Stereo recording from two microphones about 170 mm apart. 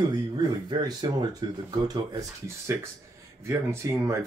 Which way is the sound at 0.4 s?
25° right (ahead or behind).